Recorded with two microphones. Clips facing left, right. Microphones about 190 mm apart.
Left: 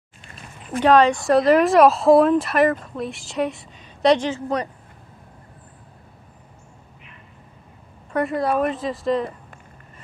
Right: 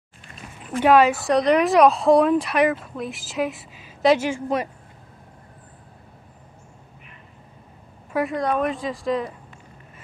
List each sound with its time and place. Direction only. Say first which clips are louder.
0.7 s a woman's voice: left 1 dB; 10° right (ahead or behind)
8.1 s a woman's voice: left 1 dB; centre (ahead or behind)